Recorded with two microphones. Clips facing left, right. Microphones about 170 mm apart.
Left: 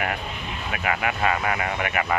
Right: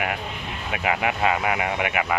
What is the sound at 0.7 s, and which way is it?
Speech, 20° right (ahead or behind).